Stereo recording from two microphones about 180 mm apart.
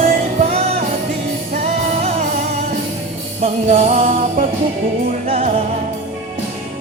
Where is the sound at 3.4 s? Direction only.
40° right (ahead or behind).